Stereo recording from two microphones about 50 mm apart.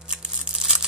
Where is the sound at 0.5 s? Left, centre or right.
Centre.